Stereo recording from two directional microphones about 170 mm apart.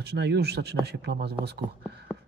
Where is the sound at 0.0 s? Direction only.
75° right (ahead or behind).